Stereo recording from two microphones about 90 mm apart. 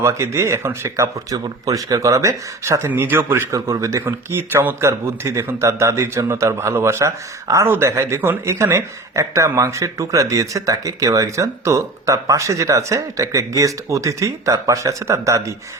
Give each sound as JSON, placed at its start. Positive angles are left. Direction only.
{"t": 0.0, "sound": "a man's voice", "side_deg": -30}